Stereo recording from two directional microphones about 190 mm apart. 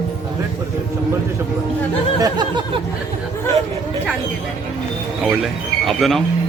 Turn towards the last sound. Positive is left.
turn(degrees=0)  # may be behind; listen again after turning